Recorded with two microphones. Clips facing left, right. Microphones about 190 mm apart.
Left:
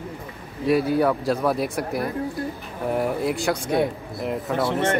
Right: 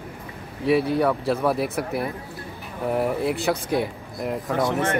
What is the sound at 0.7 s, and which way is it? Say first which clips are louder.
Speech: even; centre (ahead or behind).